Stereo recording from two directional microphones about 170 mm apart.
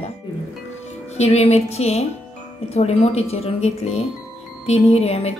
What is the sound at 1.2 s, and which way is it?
A woman's voice, 40° left (ahead or behind).